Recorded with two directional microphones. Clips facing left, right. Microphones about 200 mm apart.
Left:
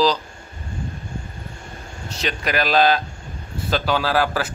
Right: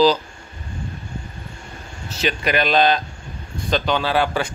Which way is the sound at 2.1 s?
Centre (ahead or behind).